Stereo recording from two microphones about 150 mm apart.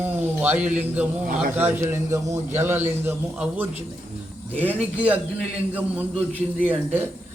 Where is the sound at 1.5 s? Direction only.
15° right (ahead or behind).